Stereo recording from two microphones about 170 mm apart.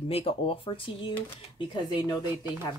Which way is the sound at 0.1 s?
35° left (ahead or behind).